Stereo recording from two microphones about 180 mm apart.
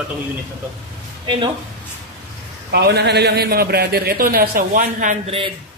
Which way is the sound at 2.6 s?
65° right (ahead or behind).